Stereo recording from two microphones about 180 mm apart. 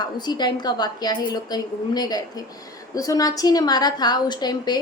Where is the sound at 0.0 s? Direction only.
25° left (ahead or behind).